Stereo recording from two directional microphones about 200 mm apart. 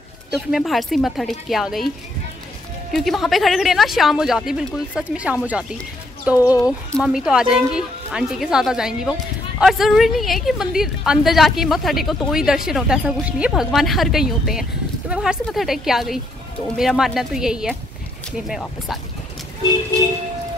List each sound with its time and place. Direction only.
0.3 s a woman's voice: centre (ahead or behind)
2.9 s a woman's voice: centre (ahead or behind)
6.3 s speech: 15° left (ahead or behind)
7.0 s a woman's voice: 5° right (ahead or behind)